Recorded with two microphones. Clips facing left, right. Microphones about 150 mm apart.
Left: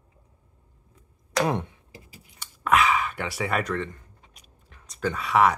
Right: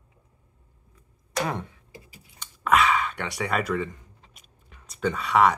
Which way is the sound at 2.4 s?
Centre (ahead or behind).